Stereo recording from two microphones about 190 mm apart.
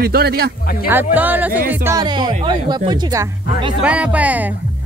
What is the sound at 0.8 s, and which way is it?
Speech, 10° right (ahead or behind).